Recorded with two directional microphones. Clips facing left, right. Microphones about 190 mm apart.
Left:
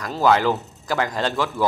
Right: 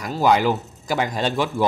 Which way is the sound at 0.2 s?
15° right (ahead or behind).